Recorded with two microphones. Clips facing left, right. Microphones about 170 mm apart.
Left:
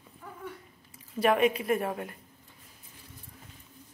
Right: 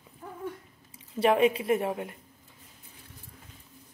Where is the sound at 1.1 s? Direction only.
30° right (ahead or behind).